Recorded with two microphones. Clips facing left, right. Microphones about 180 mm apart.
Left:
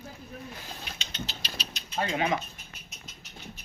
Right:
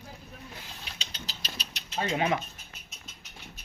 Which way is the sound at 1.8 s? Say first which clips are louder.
Left 1 dB; 70° right (ahead or behind).